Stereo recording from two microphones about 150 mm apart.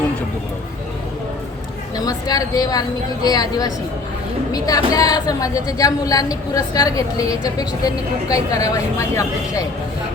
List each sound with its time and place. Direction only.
2.0 s a woman's voice: 25° left (ahead or behind)